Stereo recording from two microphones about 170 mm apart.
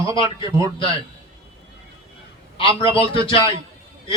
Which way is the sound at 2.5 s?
30° left (ahead or behind).